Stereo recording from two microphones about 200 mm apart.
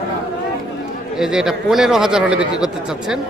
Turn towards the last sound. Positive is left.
turn(degrees=-5)  # may be behind; listen again after turning